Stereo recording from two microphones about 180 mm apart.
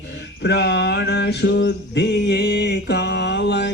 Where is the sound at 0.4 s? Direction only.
70° left (ahead or behind).